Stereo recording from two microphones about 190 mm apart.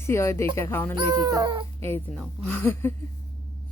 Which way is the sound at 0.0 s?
15° left (ahead or behind).